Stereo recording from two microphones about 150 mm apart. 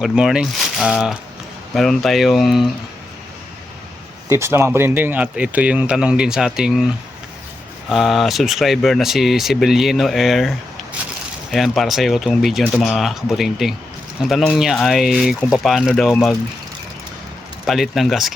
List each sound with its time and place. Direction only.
0.0 s speech: 5° right (ahead or behind)
4.3 s speech: 15° right (ahead or behind)
7.9 s speech: centre (ahead or behind)
11.5 s speech: centre (ahead or behind)
17.7 s speech: centre (ahead or behind)